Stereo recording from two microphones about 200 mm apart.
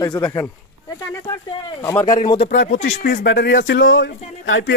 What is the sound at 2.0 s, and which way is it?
Speech, 35° left (ahead or behind).